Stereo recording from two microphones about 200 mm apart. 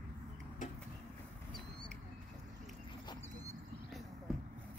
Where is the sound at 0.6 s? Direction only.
40° left (ahead or behind).